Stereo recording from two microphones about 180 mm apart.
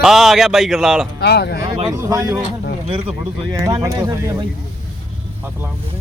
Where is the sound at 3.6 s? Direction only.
20° right (ahead or behind).